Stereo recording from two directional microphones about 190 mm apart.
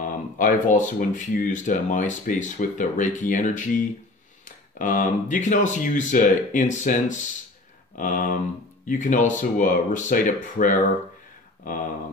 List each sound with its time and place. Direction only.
0.0 s speech: 45° left (ahead or behind)